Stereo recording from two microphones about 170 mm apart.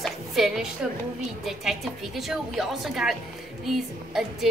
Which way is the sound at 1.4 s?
Centre (ahead or behind).